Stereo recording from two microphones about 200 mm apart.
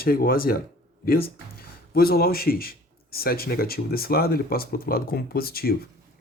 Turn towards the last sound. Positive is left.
turn(degrees=50)  # may be behind; listen again after turning